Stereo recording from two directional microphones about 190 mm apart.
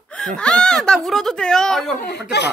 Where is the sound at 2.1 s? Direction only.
60° left (ahead or behind).